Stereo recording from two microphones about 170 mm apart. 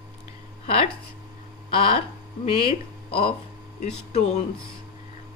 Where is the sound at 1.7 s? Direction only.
30° left (ahead or behind).